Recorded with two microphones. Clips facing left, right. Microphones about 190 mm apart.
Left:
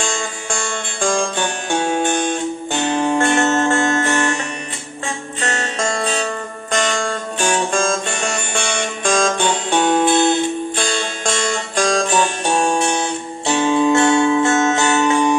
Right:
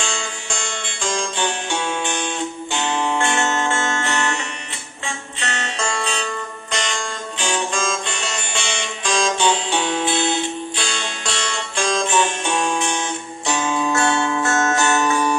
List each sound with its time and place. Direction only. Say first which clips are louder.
0.0 s music: left 4 dB; 50° left (ahead or behind)
5.4 s music: left 4 dB; 40° left (ahead or behind); by 15.2 s 25° left (ahead or behind)